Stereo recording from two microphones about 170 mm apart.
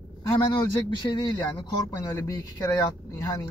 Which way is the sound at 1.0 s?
25° left (ahead or behind).